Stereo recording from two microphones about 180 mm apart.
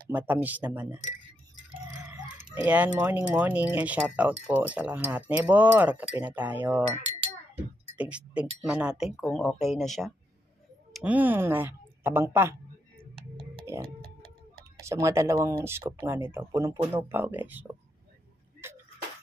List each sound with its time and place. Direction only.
0.1 s speech: 10° right (ahead or behind)
2.0 s speech: 10° right (ahead or behind)
8.0 s a woman's voice: 5° right (ahead or behind)
14.8 s speech: 15° right (ahead or behind)
18.6 s a sound: 15° right (ahead or behind)